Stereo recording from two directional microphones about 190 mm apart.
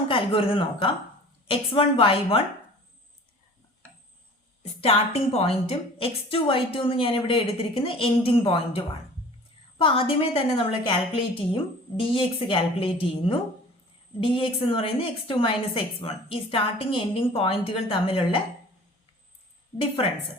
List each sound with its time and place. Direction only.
0.1 s a woman's voice: 30° left (ahead or behind)
4.6 s a woman's voice: 35° left (ahead or behind)